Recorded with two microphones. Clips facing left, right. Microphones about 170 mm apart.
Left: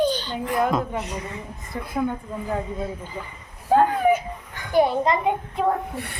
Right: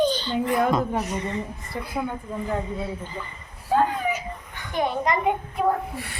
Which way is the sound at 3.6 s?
50° left (ahead or behind).